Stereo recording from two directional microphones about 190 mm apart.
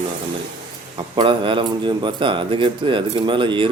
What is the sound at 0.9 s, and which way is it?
Speech, 25° right (ahead or behind).